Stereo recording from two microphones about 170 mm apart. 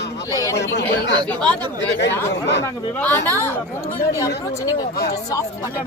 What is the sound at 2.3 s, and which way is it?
Speech, 90° left.